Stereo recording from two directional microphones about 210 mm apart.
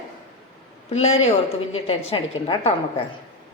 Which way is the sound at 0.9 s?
30° left (ahead or behind).